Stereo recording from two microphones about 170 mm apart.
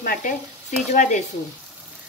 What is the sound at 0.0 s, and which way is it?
A woman's voice, 55° left (ahead or behind).